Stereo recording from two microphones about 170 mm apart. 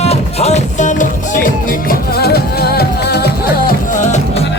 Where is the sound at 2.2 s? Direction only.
70° left (ahead or behind).